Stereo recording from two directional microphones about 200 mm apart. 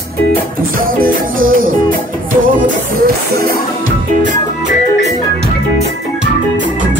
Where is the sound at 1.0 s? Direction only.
45° right (ahead or behind).